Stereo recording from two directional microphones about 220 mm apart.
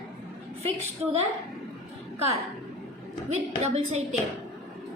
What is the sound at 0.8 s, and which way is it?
Speech, 30° right (ahead or behind).